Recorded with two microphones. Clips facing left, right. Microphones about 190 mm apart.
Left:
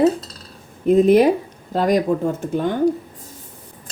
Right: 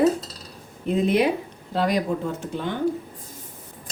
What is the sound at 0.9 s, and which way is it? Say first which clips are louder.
Speech: left 8 dB; 45° left (ahead or behind).